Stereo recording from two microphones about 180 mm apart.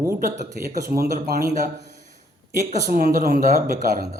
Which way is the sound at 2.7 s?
55° right (ahead or behind).